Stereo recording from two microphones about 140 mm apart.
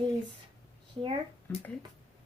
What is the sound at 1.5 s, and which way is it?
Speech, 15° left (ahead or behind).